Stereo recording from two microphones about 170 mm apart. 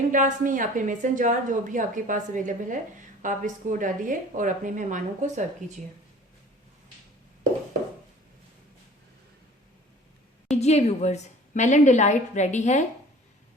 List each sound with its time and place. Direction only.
0.1 s a woman's voice: 50° right (ahead or behind)
10.6 s a woman's voice: 40° left (ahead or behind)